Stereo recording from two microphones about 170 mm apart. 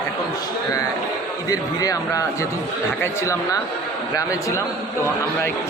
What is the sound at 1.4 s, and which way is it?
A man's voice, 20° left (ahead or behind).